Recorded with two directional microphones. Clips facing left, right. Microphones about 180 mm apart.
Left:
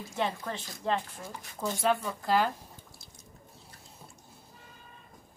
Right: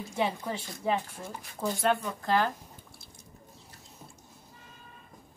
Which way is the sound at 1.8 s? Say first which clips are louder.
Even; 5° left (ahead or behind).